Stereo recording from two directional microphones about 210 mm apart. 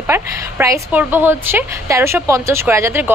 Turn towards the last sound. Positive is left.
turn(degrees=-10)  # may be behind; listen again after turning